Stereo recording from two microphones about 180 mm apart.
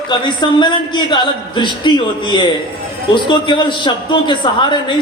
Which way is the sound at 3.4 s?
25° left (ahead or behind).